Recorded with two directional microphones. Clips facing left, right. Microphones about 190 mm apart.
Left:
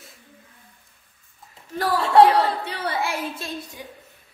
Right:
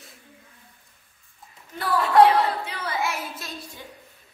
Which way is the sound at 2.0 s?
25° left (ahead or behind).